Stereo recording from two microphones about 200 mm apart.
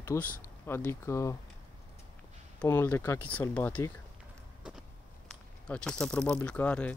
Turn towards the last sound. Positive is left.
turn(degrees=5)  # may be behind; listen again after turning